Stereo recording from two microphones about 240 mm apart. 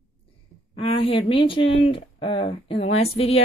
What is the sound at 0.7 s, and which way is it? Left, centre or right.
Speech, left.